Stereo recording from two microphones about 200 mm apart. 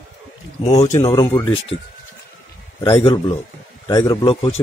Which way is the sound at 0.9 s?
30° left (ahead or behind).